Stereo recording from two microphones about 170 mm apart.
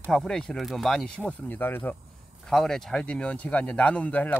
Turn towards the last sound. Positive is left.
turn(degrees=10)  # may be behind; listen again after turning